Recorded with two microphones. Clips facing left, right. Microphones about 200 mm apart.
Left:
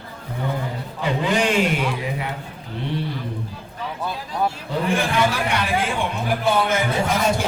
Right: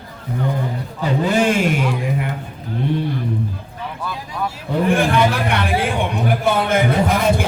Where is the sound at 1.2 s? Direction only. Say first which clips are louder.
Right 4 dB; 40° right (ahead or behind).